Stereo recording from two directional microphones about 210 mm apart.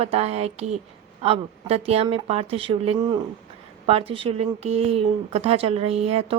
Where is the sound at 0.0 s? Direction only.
30° right (ahead or behind).